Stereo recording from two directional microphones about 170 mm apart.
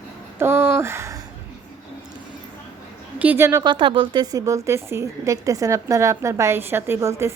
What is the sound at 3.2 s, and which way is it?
A woman's voice, 10° right (ahead or behind).